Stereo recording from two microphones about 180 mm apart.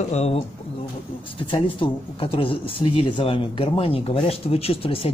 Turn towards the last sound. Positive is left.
turn(degrees=30)  # may be behind; listen again after turning